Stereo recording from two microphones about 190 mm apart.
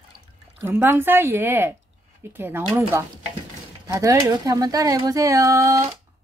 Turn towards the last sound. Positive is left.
turn(degrees=-15)  # may be behind; listen again after turning